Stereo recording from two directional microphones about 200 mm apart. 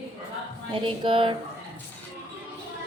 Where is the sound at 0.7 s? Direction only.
25° right (ahead or behind).